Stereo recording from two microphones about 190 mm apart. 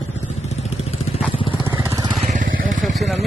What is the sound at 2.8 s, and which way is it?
Vehicle, centre (ahead or behind).